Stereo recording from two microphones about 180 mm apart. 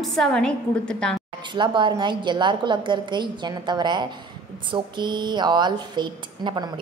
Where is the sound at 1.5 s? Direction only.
25° right (ahead or behind).